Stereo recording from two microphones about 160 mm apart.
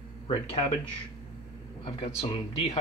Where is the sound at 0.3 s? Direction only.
35° left (ahead or behind).